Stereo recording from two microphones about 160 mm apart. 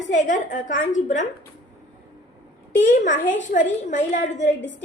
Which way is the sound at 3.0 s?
50° left (ahead or behind).